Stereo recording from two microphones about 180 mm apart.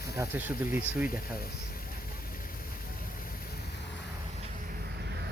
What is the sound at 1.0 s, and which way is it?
Speech, 50° left (ahead or behind).